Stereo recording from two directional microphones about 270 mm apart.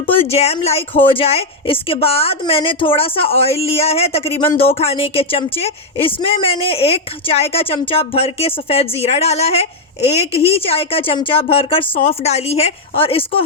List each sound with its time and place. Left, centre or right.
0.0 s speech: left